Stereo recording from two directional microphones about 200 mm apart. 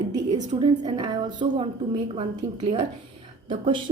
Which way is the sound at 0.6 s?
25° right (ahead or behind).